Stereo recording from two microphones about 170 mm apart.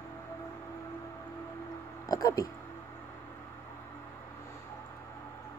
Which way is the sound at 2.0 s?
20° left (ahead or behind).